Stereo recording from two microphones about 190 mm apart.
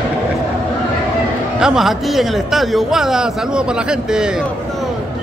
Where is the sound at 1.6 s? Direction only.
5° right (ahead or behind).